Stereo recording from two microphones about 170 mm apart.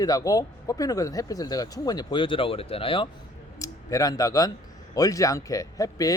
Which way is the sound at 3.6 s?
20° left (ahead or behind).